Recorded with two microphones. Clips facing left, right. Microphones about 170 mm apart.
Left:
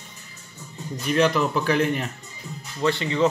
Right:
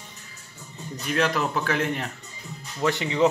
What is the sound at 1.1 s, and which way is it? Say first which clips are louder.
Speech: left 4 dB; centre (ahead or behind).